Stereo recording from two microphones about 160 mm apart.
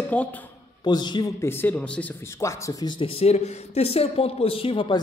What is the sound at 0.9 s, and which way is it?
Speech, 25° left (ahead or behind).